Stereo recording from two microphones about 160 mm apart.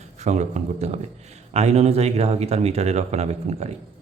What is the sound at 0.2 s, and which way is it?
Speech, 45° right (ahead or behind).